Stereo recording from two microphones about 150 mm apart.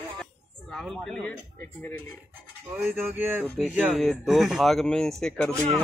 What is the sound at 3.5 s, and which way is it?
Speech, 5° right (ahead or behind).